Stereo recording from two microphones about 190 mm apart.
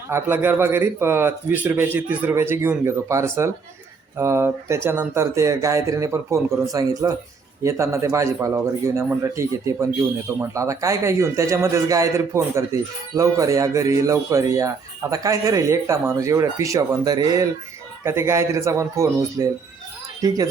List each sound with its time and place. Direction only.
0.1 s speech: 10° right (ahead or behind)